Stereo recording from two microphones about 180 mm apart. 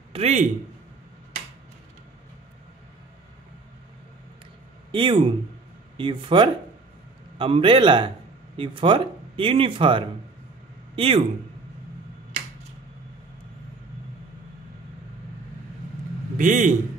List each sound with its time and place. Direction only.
0.1 s a man's voice: 35° right (ahead or behind)
4.9 s speech: 30° right (ahead or behind)
16.3 s a man's voice: 45° right (ahead or behind)